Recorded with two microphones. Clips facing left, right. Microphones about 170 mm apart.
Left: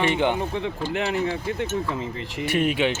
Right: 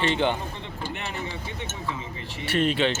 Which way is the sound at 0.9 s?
90° left.